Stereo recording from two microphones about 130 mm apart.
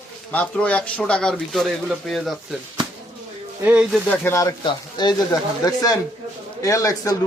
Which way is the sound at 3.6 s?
10° right (ahead or behind).